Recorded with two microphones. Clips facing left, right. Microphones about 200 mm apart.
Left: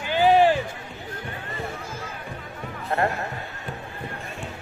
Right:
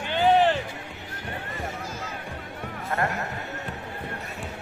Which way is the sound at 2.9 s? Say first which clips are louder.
Left 4 dB; 20° left (ahead or behind).